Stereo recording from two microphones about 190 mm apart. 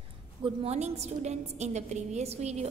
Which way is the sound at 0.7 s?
35° right (ahead or behind).